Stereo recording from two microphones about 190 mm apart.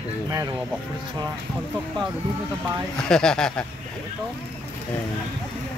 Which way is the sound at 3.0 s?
5° left (ahead or behind).